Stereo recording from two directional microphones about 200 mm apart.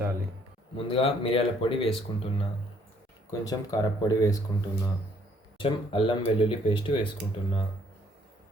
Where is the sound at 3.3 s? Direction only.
15° left (ahead or behind).